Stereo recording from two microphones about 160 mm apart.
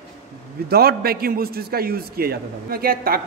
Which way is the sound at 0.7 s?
75° right (ahead or behind).